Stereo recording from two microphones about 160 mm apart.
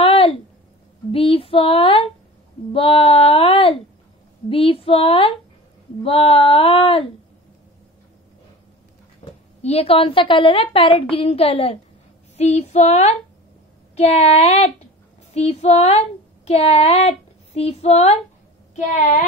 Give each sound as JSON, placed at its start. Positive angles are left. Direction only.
{"t": 0.0, "sound": "a sound", "side_deg": 35}
{"t": 1.1, "sound": "a woman's voice", "side_deg": 35}
{"t": 9.2, "sound": "a sound", "side_deg": 35}
{"t": 9.6, "sound": "a woman's voice", "side_deg": 40}
{"t": 12.4, "sound": "female singing", "side_deg": 45}
{"t": 13.9, "sound": "a woman's voice", "side_deg": 40}